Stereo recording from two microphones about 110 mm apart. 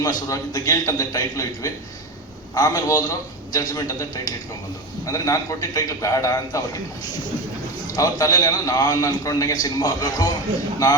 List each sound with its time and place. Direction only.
0.0 s a man's voice: 35° left (ahead or behind)
7.9 s a man's voice: 30° left (ahead or behind)